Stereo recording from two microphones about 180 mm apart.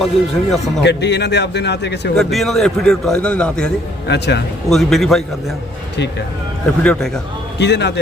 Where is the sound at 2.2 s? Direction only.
Centre (ahead or behind).